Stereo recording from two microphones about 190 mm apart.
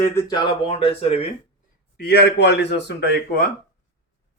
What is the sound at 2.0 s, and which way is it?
Speech, 60° left (ahead or behind).